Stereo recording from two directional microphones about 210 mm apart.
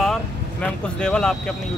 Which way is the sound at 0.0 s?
5° left (ahead or behind).